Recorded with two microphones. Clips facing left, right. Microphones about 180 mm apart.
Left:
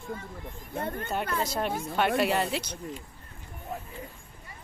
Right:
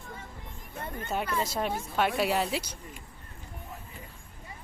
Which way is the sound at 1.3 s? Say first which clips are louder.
Left 1 dB; centre (ahead or behind).